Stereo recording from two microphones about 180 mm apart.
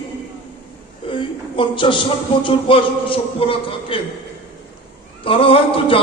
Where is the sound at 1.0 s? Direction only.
30° left (ahead or behind).